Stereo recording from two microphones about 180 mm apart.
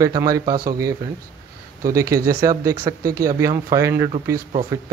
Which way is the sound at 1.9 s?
20° right (ahead or behind).